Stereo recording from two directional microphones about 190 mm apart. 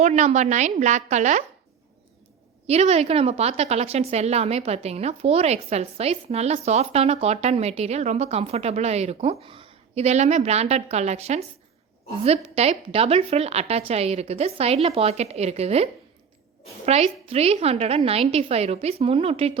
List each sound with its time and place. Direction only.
0.0 s a woman's voice: 35° right (ahead or behind)
2.6 s a woman's voice: 35° right (ahead or behind)